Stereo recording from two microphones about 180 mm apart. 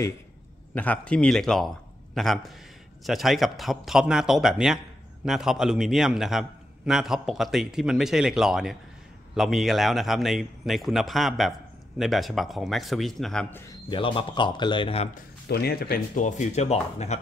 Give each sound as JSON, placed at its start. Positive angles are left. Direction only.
{"t": 0.7, "sound": "speech", "side_deg": 5}
{"t": 13.8, "sound": "speech", "side_deg": 30}
{"t": 15.1, "sound": "speech", "side_deg": 60}